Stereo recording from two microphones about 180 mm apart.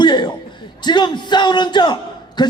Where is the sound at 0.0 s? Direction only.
25° left (ahead or behind).